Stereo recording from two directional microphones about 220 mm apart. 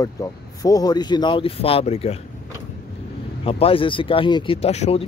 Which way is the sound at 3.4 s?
25° left (ahead or behind).